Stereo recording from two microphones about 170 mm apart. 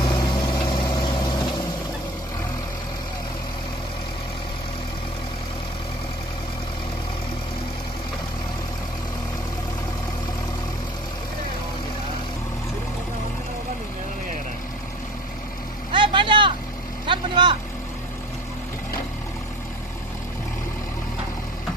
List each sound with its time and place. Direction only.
0.0 s vehicle: 25° left (ahead or behind)
15.9 s vehicle: 30° right (ahead or behind)